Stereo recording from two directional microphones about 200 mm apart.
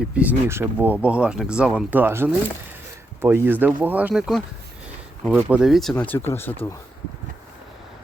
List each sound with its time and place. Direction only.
0.0 s speech: 5° right (ahead or behind)
5.5 s speech: 5° right (ahead or behind)